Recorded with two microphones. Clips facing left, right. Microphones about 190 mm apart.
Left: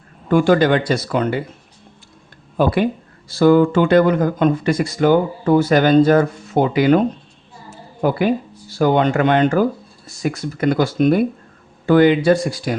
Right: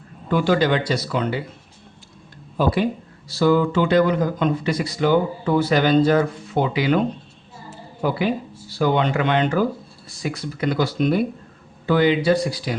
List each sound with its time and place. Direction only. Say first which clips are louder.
0.3 s speech: left 5 dB; 50° left (ahead or behind)
2.6 s speech: left 3 dB; 55° left (ahead or behind)
8.0 s speech: left 4 dB; 50° left (ahead or behind)